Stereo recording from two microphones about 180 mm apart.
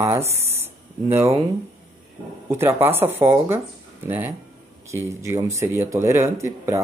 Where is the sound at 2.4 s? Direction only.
15° right (ahead or behind).